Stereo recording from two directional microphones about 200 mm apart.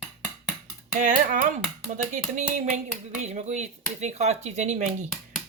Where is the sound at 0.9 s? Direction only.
40° right (ahead or behind).